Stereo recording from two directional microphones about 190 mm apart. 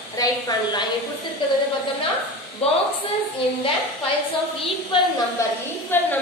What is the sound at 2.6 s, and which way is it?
Speech, 30° left (ahead or behind).